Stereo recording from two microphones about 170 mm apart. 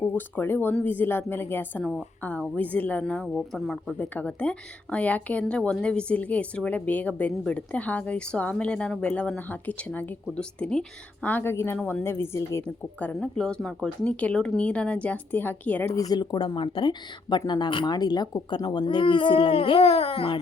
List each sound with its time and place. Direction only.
0.0 s a woman's voice: 10° left (ahead or behind)
16.0 s speech: 25° left (ahead or behind)